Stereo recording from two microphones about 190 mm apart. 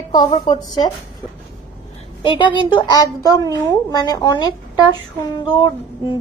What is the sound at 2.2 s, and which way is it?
A woman's voice, 25° left (ahead or behind).